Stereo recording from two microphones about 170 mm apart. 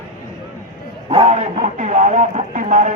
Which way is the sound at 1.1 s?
40° right (ahead or behind).